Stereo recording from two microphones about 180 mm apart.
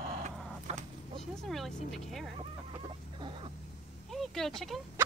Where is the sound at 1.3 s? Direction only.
Centre (ahead or behind).